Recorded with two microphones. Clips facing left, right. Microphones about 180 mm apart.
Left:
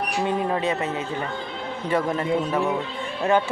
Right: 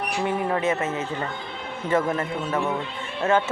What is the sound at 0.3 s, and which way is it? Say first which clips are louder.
Speech: right 1 dB; 20° left (ahead or behind).